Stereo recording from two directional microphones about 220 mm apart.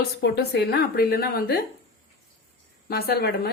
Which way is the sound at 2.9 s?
45° left (ahead or behind).